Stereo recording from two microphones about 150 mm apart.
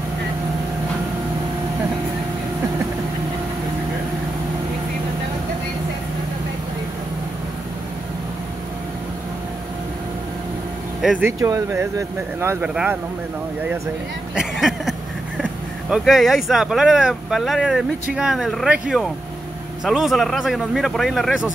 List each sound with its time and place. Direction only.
11.0 s speech: centre (ahead or behind)
11.2 s speech: 20° right (ahead or behind)
14.3 s a sound: 5° right (ahead or behind)
15.9 s speech: centre (ahead or behind)